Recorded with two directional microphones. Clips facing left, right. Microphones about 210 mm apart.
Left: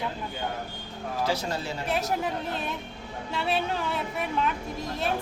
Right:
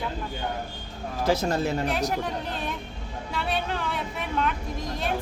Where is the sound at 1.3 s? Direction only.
50° right (ahead or behind).